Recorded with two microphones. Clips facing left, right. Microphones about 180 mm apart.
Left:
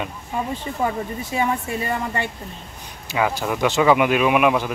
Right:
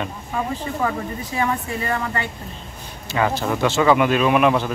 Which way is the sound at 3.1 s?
10° left (ahead or behind).